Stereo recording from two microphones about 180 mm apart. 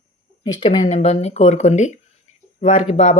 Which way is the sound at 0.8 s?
40° left (ahead or behind).